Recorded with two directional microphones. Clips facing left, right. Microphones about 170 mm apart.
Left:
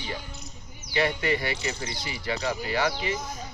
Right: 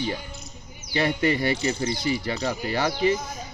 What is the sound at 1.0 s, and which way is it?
Speech, 40° right (ahead or behind).